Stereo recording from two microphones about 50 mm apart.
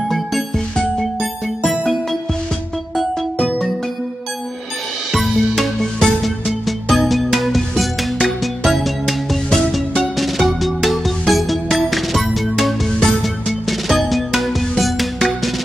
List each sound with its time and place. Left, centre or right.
0.1 s music: centre
3.3 s music: centre
5.6 s music: centre